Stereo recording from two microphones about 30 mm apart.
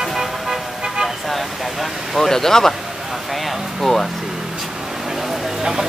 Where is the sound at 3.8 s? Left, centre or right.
Centre.